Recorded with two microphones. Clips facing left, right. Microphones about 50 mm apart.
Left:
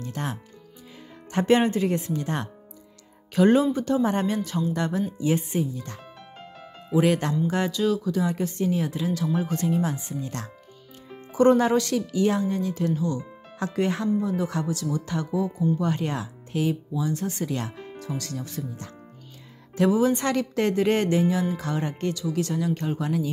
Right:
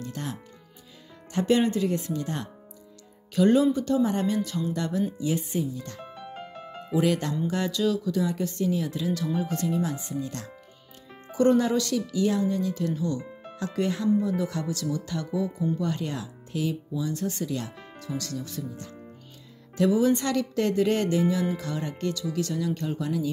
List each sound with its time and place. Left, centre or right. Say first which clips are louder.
0.0 s speech: left 3 dB; left
1.3 s speech: left 2 dB; left
7.0 s speech: left 3 dB; left
7.7 s speech: left 2 dB; centre
8.0 s speech: left 1 dB; left
11.3 s speech: left 3 dB; left
11.6 s speech: left 3 dB; left
13.7 s speech: even; left
14.3 s speech: left 2 dB; left
17.5 s speech: left 2 dB; left
19.9 s speech: even; left
20.2 s speech: left 2 dB; left